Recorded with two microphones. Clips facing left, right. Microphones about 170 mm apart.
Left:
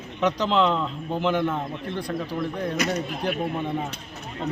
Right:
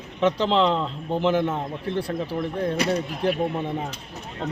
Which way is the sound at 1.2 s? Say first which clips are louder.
Right 2 dB; centre (ahead or behind).